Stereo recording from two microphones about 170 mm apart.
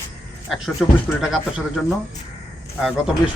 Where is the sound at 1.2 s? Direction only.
5° right (ahead or behind).